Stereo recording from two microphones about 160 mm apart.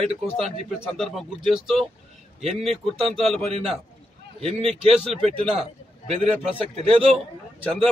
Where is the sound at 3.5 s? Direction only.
40° right (ahead or behind).